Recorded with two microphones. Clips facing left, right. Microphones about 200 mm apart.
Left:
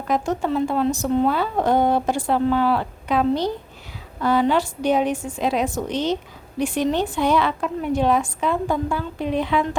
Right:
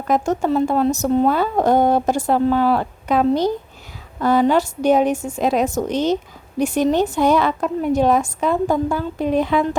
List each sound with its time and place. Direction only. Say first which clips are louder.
0.1 s speech: right 4 dB; 45° right (ahead or behind)